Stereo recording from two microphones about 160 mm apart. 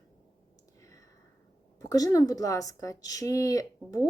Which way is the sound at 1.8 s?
20° left (ahead or behind).